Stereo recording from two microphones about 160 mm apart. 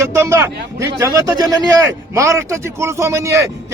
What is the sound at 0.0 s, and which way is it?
Speech, 15° right (ahead or behind).